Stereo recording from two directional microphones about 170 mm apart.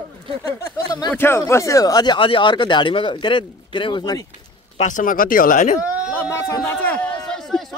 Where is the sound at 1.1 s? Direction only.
15° left (ahead or behind).